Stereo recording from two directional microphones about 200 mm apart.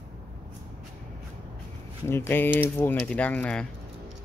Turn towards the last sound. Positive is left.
turn(degrees=5)  # may be behind; listen again after turning